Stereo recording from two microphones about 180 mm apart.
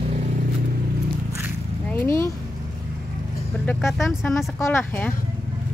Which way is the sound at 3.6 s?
Centre (ahead or behind).